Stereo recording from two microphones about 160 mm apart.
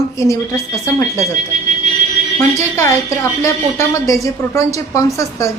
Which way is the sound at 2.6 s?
20° left (ahead or behind).